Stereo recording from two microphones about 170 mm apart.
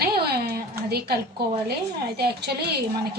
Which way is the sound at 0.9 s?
70° right (ahead or behind).